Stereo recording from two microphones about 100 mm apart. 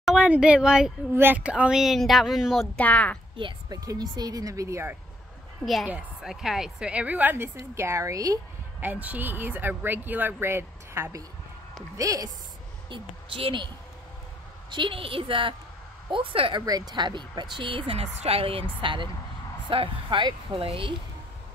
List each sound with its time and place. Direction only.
0.0 s a sound: 5° right (ahead or behind)
0.3 s a woman's voice: 10° right (ahead or behind)
1.1 s speech: 20° right (ahead or behind); by 2.8 s centre (ahead or behind)
2.8 s speech: 15° left (ahead or behind)
3.3 s speech: 55° right (ahead or behind)
3.7 s a woman's voice: 40° right (ahead or behind)
5.9 s a woman's voice: 10° right (ahead or behind)
7.7 s a woman's voice: 25° right (ahead or behind)
8.8 s a woman's voice: 15° right (ahead or behind); by 12.3 s 35° right (ahead or behind)
12.9 s speech: 60° right (ahead or behind)
14.7 s speech: 55° right (ahead or behind)
16.6 s speech: 40° right (ahead or behind); by 20.3 s 55° right (ahead or behind)
20.5 s a woman's voice: 70° right (ahead or behind)